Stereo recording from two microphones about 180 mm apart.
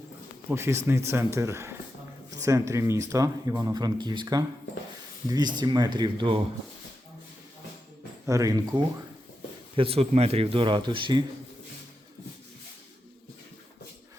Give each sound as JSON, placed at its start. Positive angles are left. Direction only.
{"t": 0.4, "sound": "speech", "side_deg": -15}
{"t": 5.5, "sound": "speech", "side_deg": -25}
{"t": 8.3, "sound": "speech", "side_deg": -20}
{"t": 9.7, "sound": "speech", "side_deg": -30}